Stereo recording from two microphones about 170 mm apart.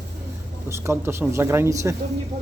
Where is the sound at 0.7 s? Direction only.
15° right (ahead or behind).